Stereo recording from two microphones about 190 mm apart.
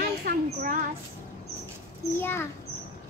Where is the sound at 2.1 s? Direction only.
15° left (ahead or behind).